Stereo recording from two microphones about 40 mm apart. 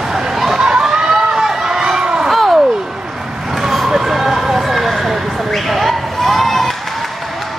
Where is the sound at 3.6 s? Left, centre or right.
Centre.